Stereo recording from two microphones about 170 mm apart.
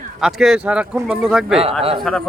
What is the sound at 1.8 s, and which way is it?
Speech, 35° right (ahead or behind).